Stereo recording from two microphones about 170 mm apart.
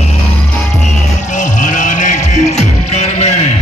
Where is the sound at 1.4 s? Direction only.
50° left (ahead or behind).